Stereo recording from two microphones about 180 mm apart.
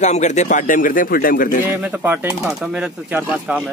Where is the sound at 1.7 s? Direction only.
10° right (ahead or behind).